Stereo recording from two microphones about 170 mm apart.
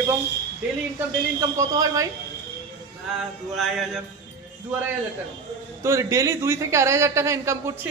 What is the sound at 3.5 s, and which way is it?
Mantra, centre (ahead or behind).